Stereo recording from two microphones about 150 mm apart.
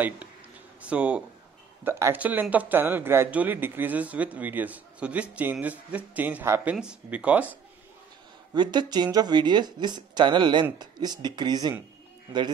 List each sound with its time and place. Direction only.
0.8 s speech: 5° right (ahead or behind)
8.5 s speech: 30° right (ahead or behind)